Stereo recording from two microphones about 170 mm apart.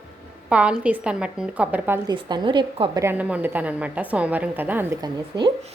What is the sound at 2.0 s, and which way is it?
Speech, 25° right (ahead or behind).